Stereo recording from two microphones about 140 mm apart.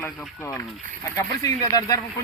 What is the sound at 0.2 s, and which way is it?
Speech, 15° left (ahead or behind).